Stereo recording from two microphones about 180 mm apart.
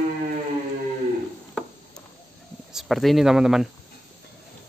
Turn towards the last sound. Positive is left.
turn(degrees=-5)  # may be behind; listen again after turning